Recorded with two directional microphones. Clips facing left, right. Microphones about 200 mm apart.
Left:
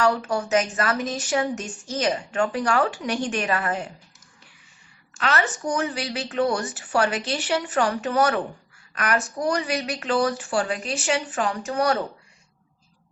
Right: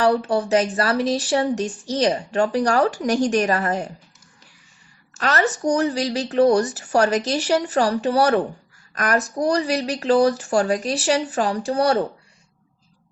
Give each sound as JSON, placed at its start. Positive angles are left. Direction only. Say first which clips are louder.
{"t": 0.0, "sound": "speech", "louder": "right 4 dB", "side_deg": -30}
{"t": 5.1, "sound": "speech", "louder": "right 3 dB", "side_deg": -40}